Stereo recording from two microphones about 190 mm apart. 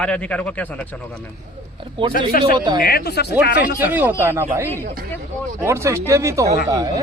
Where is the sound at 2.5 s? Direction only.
25° right (ahead or behind).